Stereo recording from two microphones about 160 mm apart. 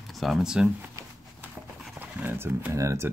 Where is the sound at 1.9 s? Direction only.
15° right (ahead or behind).